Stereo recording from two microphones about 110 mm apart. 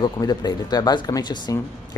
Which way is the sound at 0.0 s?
35° left (ahead or behind).